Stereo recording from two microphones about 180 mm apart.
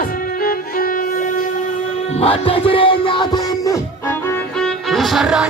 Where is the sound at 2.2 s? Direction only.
30° left (ahead or behind).